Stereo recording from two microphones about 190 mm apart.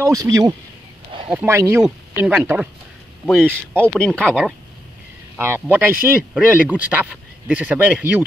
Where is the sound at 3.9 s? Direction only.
5° left (ahead or behind).